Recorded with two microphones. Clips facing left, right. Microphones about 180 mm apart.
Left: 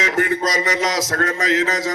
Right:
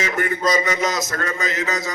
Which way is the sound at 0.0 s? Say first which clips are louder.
Left 2 dB; 85° left.